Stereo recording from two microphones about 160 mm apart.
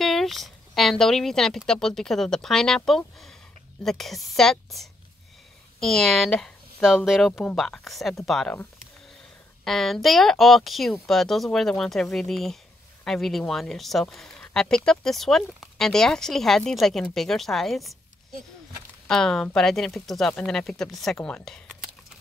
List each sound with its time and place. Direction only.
0.0 s speech: centre (ahead or behind)
9.7 s speech: centre (ahead or behind)
19.0 s speech: 5° left (ahead or behind)